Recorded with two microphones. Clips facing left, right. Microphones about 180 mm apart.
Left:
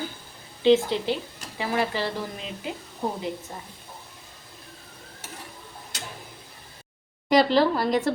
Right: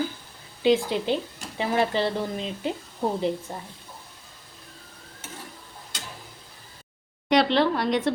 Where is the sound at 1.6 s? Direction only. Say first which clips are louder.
Right 3 dB; 25° right (ahead or behind).